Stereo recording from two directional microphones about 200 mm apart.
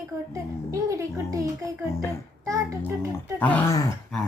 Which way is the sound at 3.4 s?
5° left (ahead or behind).